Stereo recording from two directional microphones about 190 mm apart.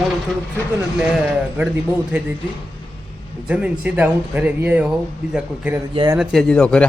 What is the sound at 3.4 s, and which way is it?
Speech, 5° right (ahead or behind).